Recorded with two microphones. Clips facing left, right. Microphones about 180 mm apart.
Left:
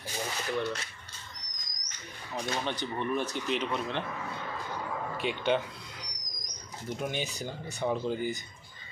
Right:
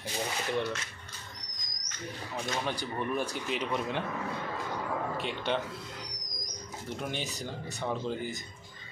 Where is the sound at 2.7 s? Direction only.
10° right (ahead or behind).